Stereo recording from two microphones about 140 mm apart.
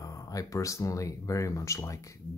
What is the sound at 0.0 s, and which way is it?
Speech, 25° left (ahead or behind).